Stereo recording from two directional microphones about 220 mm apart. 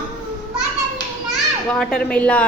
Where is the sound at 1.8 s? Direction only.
5° left (ahead or behind).